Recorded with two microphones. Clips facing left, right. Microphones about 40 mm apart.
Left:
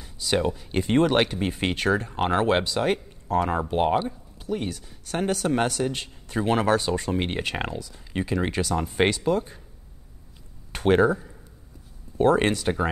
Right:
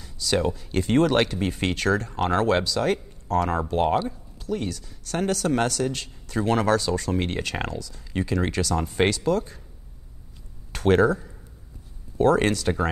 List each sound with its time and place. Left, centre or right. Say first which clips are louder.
0.0 s a sound: even; centre
0.5 s speech: right 1 dB; centre
3.3 s speech: even; centre
10.7 s speech: even; centre
12.2 s speech: even; centre